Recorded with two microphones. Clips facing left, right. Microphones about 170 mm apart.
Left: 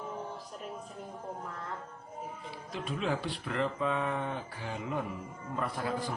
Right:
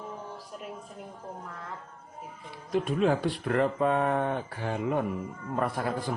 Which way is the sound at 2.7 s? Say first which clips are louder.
Right 8 dB; 50° right (ahead or behind).